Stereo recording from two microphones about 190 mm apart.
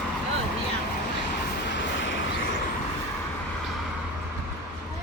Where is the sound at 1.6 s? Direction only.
75° left (ahead or behind).